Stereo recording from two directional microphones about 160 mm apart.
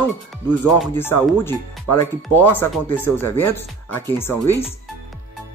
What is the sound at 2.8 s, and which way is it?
Speech, 15° left (ahead or behind).